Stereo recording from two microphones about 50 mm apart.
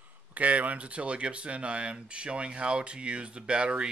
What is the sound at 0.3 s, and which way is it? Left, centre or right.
Speech, right.